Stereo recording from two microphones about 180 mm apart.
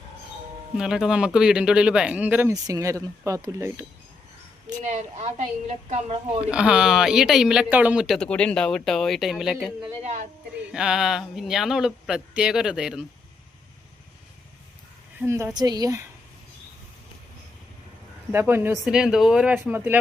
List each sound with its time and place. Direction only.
0.8 s speech: 5° right (ahead or behind)
2.5 s speech: 20° right (ahead or behind)
4.8 s a woman's voice: 35° right (ahead or behind)
6.5 s speech: 5° right (ahead or behind)
15.2 s speech: 10° right (ahead or behind)
15.5 s a woman's voice: 20° right (ahead or behind)
18.3 s speech: 10° right (ahead or behind)